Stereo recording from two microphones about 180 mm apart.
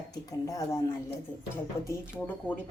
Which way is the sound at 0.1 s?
20° left (ahead or behind).